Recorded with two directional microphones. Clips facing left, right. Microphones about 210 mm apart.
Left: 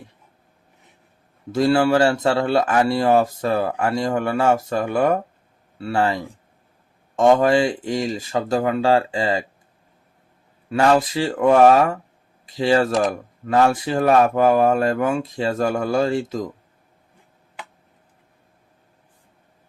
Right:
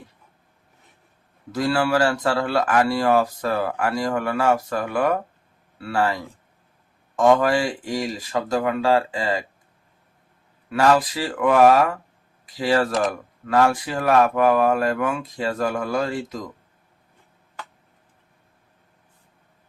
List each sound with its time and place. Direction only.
1.5 s speech: 25° left (ahead or behind)
10.7 s speech: 25° left (ahead or behind)